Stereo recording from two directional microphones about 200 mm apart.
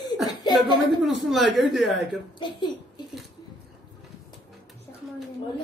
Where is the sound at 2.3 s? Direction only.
25° left (ahead or behind).